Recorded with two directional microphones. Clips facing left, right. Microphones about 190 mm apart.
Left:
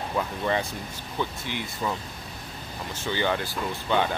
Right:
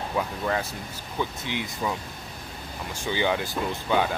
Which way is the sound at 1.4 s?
15° right (ahead or behind).